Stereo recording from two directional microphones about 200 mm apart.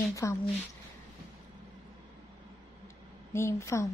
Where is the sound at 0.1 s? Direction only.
15° left (ahead or behind).